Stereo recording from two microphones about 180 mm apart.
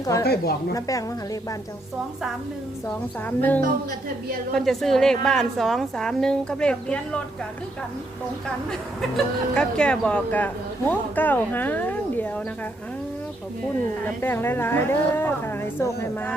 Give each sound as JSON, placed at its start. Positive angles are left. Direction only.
{"t": 0.0, "sound": "a woman's voice", "side_deg": 20}
{"t": 3.2, "sound": "a woman's voice", "side_deg": 10}
{"t": 9.0, "sound": "speech", "side_deg": 5}
{"t": 14.2, "sound": "speech", "side_deg": 10}